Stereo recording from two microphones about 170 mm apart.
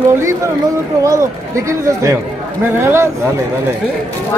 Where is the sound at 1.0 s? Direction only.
20° right (ahead or behind).